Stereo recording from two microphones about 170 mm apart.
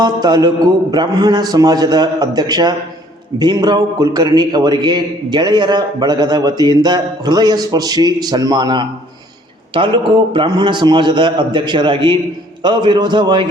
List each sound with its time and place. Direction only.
0.0 s a man's voice: 25° right (ahead or behind)